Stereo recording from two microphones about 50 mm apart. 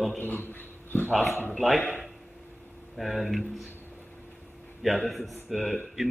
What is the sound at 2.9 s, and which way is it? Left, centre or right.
Speech, centre.